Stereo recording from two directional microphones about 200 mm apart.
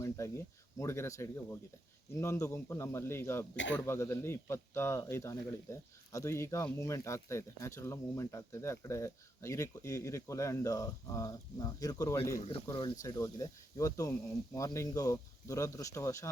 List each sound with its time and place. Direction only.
0.2 s speech: 15° left (ahead or behind)
3.5 s speech: 65° left (ahead or behind)
3.8 s speech: 15° left (ahead or behind)